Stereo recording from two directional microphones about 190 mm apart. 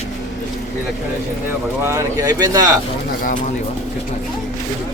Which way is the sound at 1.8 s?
15° right (ahead or behind).